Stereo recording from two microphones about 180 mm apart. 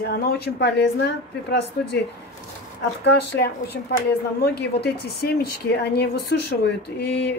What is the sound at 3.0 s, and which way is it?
A woman's voice, 70° left (ahead or behind).